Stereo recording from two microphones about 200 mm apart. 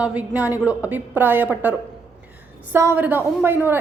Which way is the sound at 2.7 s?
10° right (ahead or behind).